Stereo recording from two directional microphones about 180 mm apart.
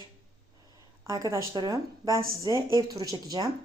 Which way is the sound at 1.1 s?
20° right (ahead or behind).